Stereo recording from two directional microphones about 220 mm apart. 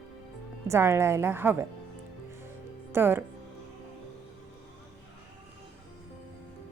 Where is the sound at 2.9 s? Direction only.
10° right (ahead or behind).